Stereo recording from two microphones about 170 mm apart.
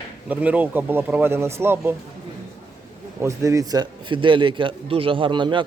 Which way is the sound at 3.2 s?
20° right (ahead or behind).